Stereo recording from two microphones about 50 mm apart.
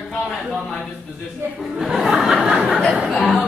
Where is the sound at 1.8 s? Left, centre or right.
Centre.